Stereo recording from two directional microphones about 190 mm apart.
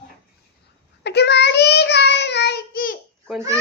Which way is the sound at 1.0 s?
65° left (ahead or behind).